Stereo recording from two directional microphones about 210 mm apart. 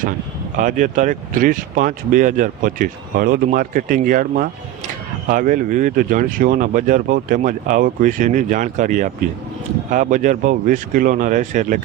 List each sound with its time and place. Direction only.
0.5 s speech: 40° right (ahead or behind)